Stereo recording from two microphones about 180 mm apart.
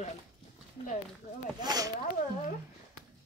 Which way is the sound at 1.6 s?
20° right (ahead or behind).